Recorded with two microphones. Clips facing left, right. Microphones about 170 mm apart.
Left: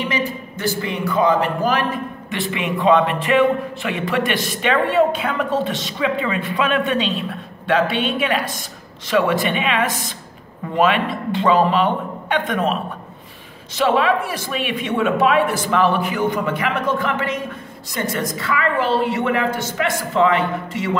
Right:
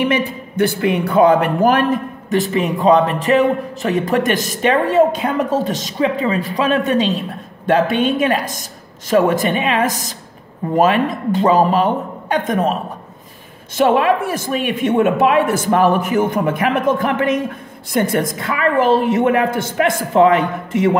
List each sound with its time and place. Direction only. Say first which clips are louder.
0.0 s a man's voice: right 5 dB; 60° right (ahead or behind); by 12.7 s 40° right (ahead or behind)
13.7 s a man's voice: right 3 dB; 50° right (ahead or behind)